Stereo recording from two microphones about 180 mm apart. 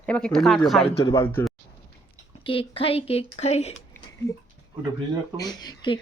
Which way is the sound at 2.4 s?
30° left (ahead or behind).